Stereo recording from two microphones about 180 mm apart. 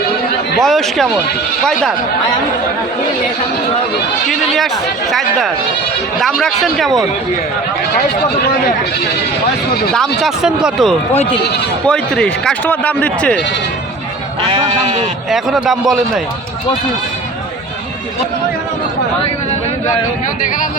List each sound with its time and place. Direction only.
0.6 s a man's voice: centre (ahead or behind)
4.3 s a man's voice: centre (ahead or behind)
10.2 s a man's voice: centre (ahead or behind)
11.1 s speech: 35° left (ahead or behind)
11.9 s speech: 5° left (ahead or behind)
14.5 s sheep: 30° right (ahead or behind)
15.3 s a man's voice: centre (ahead or behind)